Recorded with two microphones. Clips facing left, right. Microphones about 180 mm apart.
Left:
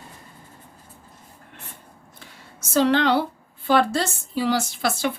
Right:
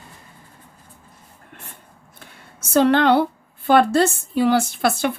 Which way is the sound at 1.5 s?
50° right (ahead or behind).